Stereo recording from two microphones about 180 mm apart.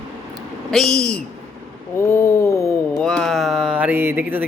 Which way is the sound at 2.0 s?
15° left (ahead or behind).